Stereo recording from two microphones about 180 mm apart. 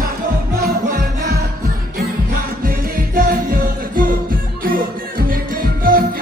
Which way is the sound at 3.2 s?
55° right (ahead or behind).